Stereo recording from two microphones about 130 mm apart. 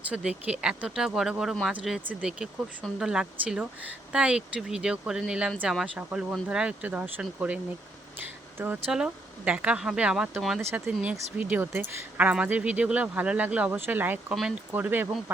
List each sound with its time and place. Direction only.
0.1 s speech: 10° right (ahead or behind)
8.2 s a sound: 15° right (ahead or behind)
8.9 s speech: 10° right (ahead or behind)
10.6 s speech: 20° right (ahead or behind)